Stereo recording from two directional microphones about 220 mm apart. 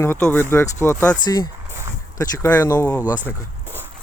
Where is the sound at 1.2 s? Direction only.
20° left (ahead or behind).